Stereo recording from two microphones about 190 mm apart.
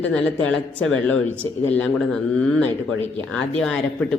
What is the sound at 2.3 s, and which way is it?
Speech, 5° left (ahead or behind).